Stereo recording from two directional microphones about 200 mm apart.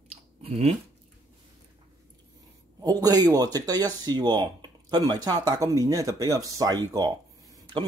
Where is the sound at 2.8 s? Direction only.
20° right (ahead or behind).